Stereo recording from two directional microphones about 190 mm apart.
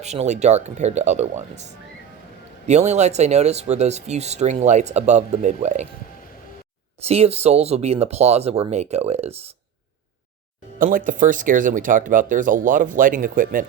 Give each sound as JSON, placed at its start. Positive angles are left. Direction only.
{"t": 0.0, "sound": "speech", "side_deg": -35}
{"t": 7.0, "sound": "speech", "side_deg": -35}
{"t": 10.8, "sound": "speech", "side_deg": -45}